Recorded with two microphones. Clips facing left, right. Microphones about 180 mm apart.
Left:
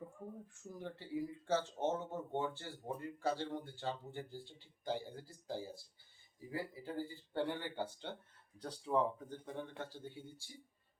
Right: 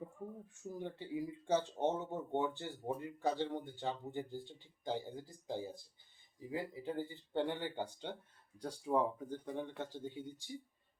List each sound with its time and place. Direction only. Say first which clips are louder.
0.7 s speech: right 2 dB; 15° right (ahead or behind)